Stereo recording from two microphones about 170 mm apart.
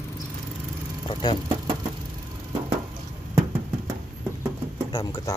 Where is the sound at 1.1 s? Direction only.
25° left (ahead or behind).